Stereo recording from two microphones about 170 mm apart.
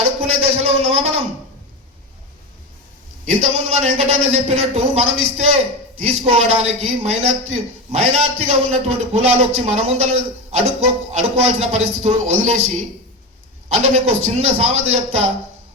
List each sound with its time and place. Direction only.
0.2 s a sound: 40° right (ahead or behind)
3.4 s a man's voice: 40° right (ahead or behind)
13.8 s a man's voice: 40° right (ahead or behind)